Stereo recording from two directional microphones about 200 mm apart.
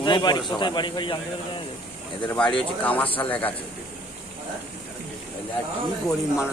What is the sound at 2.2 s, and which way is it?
Speech, 5° left (ahead or behind).